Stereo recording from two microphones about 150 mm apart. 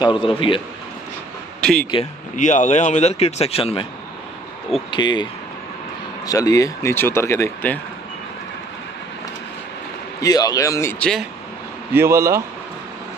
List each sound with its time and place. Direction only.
0.0 s a man's voice: 35° left (ahead or behind)
1.6 s speech: 5° left (ahead or behind)
2.3 s speech: 55° left (ahead or behind)
4.9 s speech: 30° left (ahead or behind); by 7.8 s 15° left (ahead or behind)
10.2 s speech: 25° left (ahead or behind)
11.9 s speech: 15° right (ahead or behind)